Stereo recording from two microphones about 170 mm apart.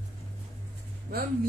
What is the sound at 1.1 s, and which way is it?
Speech, 60° right (ahead or behind).